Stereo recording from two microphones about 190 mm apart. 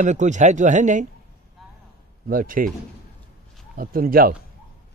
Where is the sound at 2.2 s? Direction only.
45° right (ahead or behind).